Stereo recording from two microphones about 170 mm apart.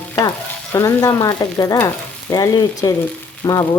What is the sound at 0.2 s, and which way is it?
Speech, 20° left (ahead or behind).